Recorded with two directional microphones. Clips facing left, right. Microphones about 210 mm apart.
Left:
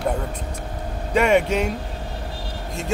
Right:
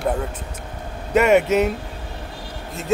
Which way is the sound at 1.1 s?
5° right (ahead or behind).